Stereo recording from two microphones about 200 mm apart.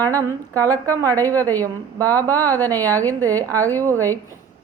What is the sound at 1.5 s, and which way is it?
A woman's voice, 10° left (ahead or behind).